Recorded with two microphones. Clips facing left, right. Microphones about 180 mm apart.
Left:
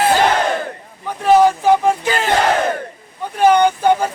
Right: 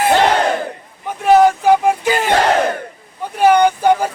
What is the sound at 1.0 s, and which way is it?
Speech, 15° right (ahead or behind).